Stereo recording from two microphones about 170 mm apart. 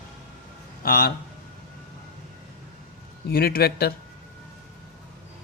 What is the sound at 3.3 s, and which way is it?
Speech, 65° left (ahead or behind).